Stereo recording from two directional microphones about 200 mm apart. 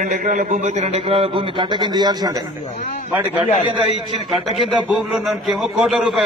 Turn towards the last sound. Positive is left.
turn(degrees=0)  # may be behind; listen again after turning